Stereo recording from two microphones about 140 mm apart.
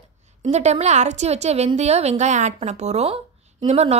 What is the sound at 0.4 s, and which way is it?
A woman's voice, 55° right (ahead or behind).